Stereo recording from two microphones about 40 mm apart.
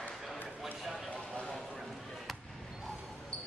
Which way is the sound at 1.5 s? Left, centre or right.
Centre.